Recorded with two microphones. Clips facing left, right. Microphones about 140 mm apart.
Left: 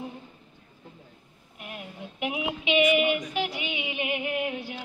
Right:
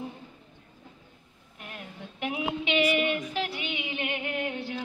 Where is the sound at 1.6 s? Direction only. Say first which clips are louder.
Left 3 dB; 10° left (ahead or behind).